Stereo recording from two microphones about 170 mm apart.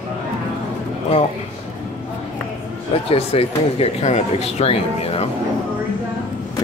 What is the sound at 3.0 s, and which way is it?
Speech, 35° left (ahead or behind).